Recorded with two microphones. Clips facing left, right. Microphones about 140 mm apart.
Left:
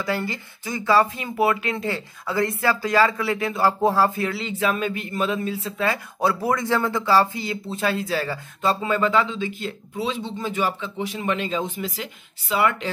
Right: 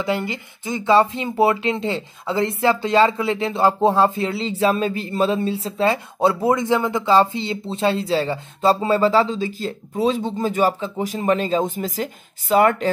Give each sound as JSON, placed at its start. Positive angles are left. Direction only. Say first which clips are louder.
{"t": 0.0, "sound": "speech", "louder": "right 3 dB", "side_deg": -20}